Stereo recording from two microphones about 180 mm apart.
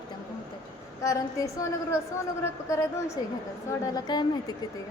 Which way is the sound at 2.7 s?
15° left (ahead or behind).